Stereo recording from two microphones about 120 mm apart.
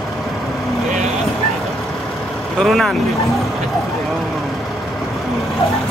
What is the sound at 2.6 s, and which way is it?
Speech, centre (ahead or behind).